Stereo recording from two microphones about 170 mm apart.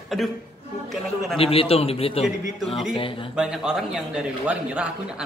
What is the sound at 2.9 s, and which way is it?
Speech, 30° left (ahead or behind).